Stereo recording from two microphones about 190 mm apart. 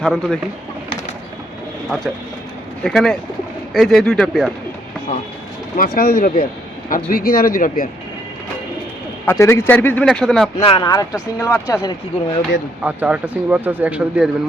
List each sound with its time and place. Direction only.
0.0 s speech: centre (ahead or behind)
2.8 s speech: centre (ahead or behind)
5.7 s speech: 50° left (ahead or behind)
9.2 s speech: 15° left (ahead or behind)
10.6 s speech: 25° left (ahead or behind)
12.8 s speech: 10° right (ahead or behind)